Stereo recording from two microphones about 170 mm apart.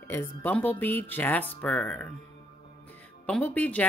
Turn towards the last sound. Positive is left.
turn(degrees=10)  # may be behind; listen again after turning